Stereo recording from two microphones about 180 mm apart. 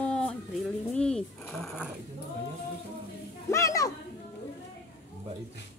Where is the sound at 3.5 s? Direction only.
20° left (ahead or behind).